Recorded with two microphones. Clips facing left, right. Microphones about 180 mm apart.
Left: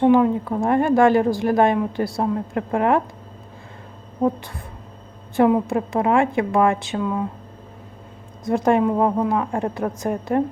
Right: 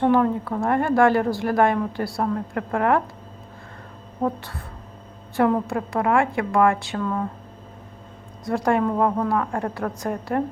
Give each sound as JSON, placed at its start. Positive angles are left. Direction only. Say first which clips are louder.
{"t": 0.0, "sound": "a woman's voice", "louder": "left 3 dB", "side_deg": 15}
{"t": 5.4, "sound": "a woman's voice", "louder": "left 3 dB", "side_deg": 15}
{"t": 8.4, "sound": "a woman's voice", "louder": "left 3 dB", "side_deg": 20}